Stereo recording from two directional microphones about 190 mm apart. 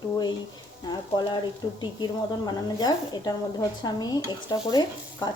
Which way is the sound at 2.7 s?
20° left (ahead or behind).